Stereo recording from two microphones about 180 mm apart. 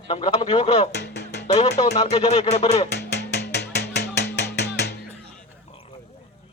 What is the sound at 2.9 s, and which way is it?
Music, 65° left (ahead or behind).